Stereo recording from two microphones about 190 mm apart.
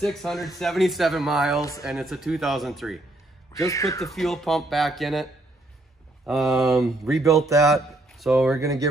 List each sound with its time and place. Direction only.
0.0 s speech: centre (ahead or behind)
1.6 s speech: 15° left (ahead or behind)
1.9 s speech: centre (ahead or behind)
3.5 s speech: 15° left (ahead or behind)
4.1 s a man's voice: centre (ahead or behind)
8.5 s speech: 15° right (ahead or behind)